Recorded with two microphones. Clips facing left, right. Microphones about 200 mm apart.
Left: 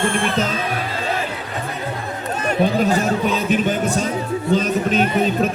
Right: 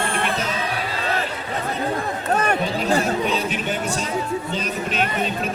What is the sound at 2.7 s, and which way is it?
Speech, 45° left (ahead or behind).